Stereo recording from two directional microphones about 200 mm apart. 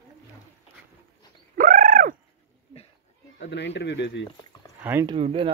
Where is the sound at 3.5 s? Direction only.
60° left (ahead or behind).